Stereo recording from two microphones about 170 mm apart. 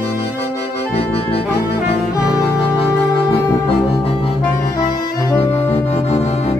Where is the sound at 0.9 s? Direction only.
35° left (ahead or behind).